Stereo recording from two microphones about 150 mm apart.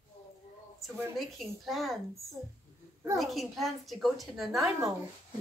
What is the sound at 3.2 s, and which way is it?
A woman's voice, centre (ahead or behind).